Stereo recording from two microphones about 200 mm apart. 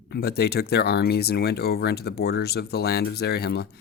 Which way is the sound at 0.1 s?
55° left (ahead or behind).